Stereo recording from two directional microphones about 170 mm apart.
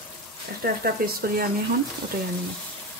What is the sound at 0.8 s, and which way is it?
Speech, 65° right (ahead or behind).